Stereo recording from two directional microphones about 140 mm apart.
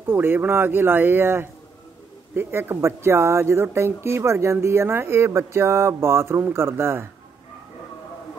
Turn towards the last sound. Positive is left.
turn(degrees=-20)  # may be behind; listen again after turning